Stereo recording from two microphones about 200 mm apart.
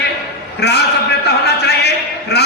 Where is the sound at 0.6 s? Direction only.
55° left (ahead or behind).